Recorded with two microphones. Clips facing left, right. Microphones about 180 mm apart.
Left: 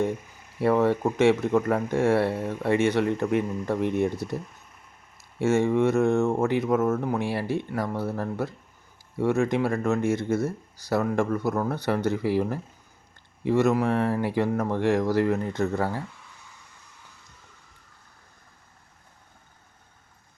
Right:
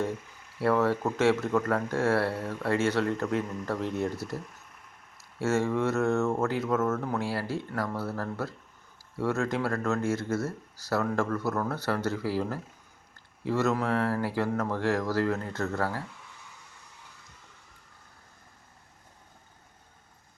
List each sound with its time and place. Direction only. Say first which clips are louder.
0.6 s speech: left 4 dB; 20° left (ahead or behind)
5.4 s speech: left 5 dB; 15° left (ahead or behind)